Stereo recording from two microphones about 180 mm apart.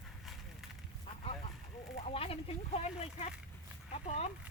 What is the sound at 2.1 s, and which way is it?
Speech, 30° left (ahead or behind).